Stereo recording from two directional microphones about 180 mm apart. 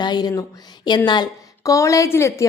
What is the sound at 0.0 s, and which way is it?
A woman's voice, 25° left (ahead or behind).